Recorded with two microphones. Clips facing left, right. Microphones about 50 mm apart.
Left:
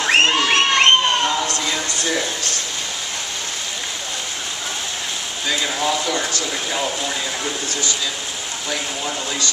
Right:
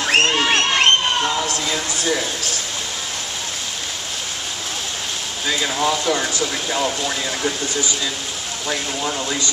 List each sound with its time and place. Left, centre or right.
0.0 s a sound: centre
5.5 s speech: centre
8.6 s speech: centre